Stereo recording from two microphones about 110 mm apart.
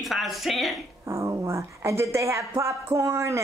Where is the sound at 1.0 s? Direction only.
25° right (ahead or behind).